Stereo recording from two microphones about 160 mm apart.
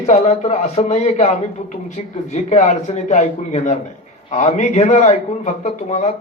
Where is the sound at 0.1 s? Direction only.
40° left (ahead or behind).